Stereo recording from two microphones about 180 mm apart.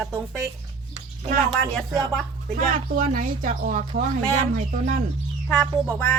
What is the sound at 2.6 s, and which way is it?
Speech, 50° right (ahead or behind).